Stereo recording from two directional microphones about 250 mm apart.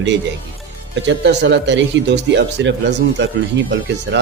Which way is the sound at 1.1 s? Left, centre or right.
Right.